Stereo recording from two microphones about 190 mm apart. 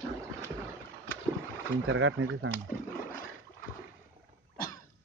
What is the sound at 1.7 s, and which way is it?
Speech, 90° right.